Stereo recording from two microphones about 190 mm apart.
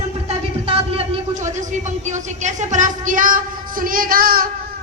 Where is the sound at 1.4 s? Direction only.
40° right (ahead or behind).